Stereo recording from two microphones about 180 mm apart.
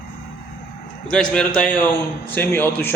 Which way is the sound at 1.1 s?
5° left (ahead or behind).